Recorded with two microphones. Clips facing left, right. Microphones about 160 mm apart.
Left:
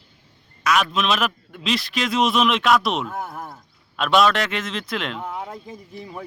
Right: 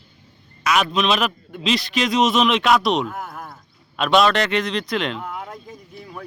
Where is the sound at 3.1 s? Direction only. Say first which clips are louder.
Left 1 dB; 25° left (ahead or behind).